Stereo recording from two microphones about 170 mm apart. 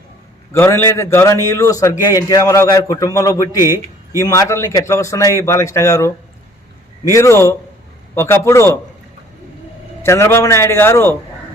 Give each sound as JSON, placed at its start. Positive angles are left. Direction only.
{"t": 0.5, "sound": "a man's voice", "side_deg": 15}
{"t": 7.1, "sound": "a man's voice", "side_deg": 15}
{"t": 10.0, "sound": "a man's voice", "side_deg": 15}